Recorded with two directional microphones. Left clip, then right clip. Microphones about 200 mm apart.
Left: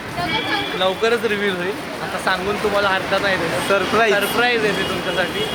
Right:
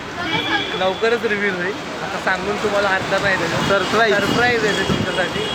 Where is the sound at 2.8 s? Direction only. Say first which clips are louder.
Even; 20° left (ahead or behind).